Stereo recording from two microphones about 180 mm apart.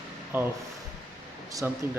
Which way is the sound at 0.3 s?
10° right (ahead or behind).